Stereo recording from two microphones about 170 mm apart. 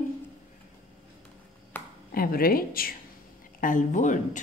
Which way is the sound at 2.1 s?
60° left (ahead or behind).